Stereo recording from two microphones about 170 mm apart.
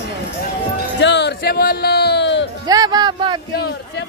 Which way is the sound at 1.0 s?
90° left.